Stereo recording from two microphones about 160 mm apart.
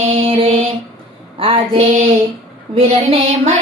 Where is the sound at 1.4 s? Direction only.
35° right (ahead or behind).